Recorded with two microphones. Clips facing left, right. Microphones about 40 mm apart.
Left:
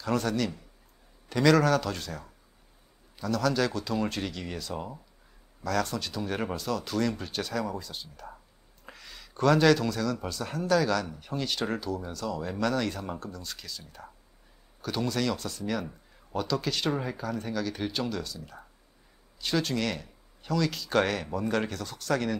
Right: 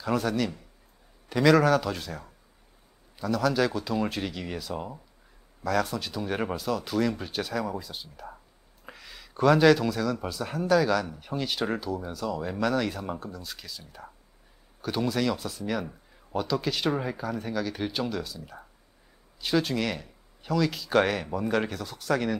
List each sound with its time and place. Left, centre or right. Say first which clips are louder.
0.0 s speech: right 1 dB; centre